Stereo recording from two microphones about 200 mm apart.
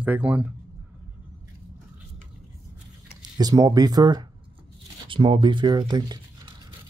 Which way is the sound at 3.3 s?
20° right (ahead or behind).